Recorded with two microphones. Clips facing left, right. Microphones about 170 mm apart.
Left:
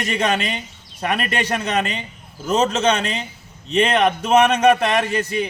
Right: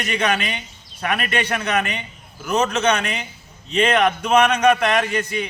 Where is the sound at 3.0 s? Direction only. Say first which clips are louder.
Left 2 dB; 25° left (ahead or behind).